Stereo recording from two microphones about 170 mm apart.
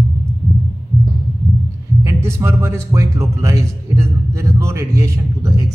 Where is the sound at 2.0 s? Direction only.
15° right (ahead or behind).